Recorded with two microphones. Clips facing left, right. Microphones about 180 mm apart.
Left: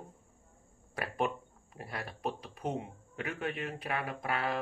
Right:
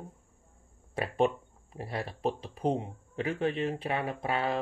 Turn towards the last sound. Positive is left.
turn(degrees=-25)  # may be behind; listen again after turning